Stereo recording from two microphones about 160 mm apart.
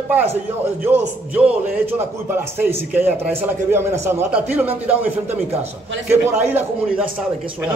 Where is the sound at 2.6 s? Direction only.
15° right (ahead or behind).